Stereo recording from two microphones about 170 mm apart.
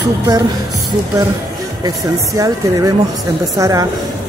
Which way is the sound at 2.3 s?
20° right (ahead or behind).